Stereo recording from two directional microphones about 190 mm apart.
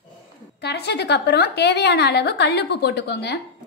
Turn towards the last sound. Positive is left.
turn(degrees=60)  # may be behind; listen again after turning